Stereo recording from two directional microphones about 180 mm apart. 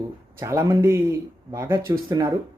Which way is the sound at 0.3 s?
15° right (ahead or behind).